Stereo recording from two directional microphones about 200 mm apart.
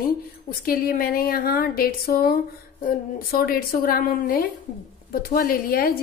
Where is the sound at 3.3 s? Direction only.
50° left (ahead or behind).